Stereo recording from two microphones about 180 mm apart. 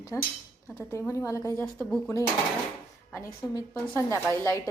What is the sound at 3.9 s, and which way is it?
Speech, 15° left (ahead or behind).